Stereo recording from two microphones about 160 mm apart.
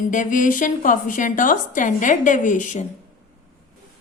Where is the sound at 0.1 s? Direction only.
55° left (ahead or behind).